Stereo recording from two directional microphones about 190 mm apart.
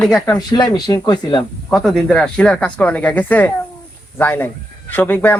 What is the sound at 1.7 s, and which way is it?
Speech, centre (ahead or behind).